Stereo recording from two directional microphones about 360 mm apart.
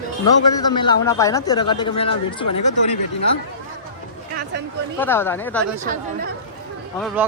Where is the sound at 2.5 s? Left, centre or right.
Left.